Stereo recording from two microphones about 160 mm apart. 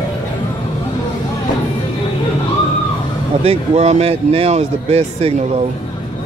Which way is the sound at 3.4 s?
40° right (ahead or behind).